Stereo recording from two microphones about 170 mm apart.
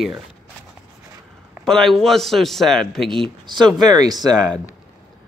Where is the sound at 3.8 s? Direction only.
25° right (ahead or behind).